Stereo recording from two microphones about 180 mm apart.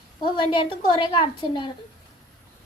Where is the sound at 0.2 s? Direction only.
25° left (ahead or behind).